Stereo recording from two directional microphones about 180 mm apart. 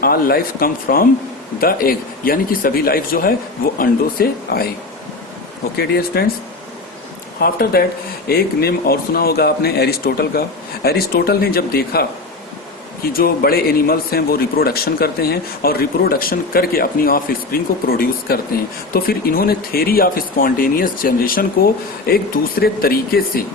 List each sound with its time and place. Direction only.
0.0 s a man's voice: 55° left (ahead or behind)
5.7 s a man's voice: 60° left (ahead or behind)
7.3 s a man's voice: 55° left (ahead or behind)
13.1 s a man's voice: 55° left (ahead or behind)